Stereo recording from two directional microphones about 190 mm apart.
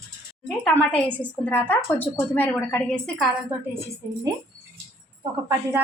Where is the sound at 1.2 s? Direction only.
10° left (ahead or behind).